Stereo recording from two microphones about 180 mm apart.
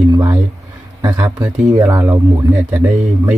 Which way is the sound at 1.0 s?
20° right (ahead or behind).